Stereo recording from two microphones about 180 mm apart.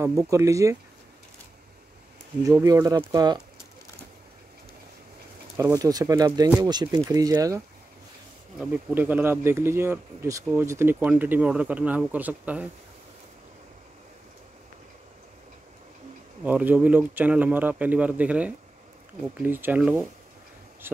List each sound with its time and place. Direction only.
0.0 s speech: 15° right (ahead or behind)
2.4 s speech: 20° right (ahead or behind)
5.6 s speech: 20° right (ahead or behind)
16.4 s speech: 10° right (ahead or behind)